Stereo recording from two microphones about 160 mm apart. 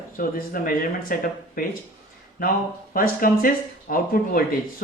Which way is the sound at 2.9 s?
65° left (ahead or behind).